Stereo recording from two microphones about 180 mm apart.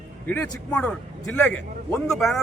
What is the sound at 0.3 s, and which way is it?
A man's voice, 5° left (ahead or behind).